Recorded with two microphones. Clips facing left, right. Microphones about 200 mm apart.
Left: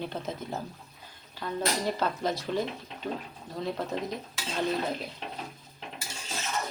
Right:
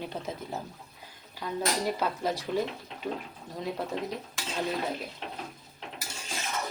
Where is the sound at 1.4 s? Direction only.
10° right (ahead or behind).